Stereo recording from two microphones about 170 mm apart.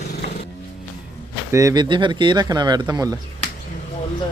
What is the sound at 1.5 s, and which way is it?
Speech, 20° right (ahead or behind).